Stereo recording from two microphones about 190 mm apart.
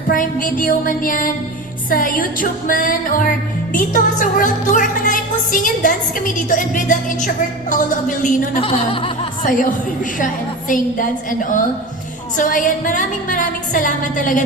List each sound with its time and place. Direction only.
0.1 s music: 45° left (ahead or behind)
8.5 s speech: 30° left (ahead or behind)
9.4 s music: 45° left (ahead or behind)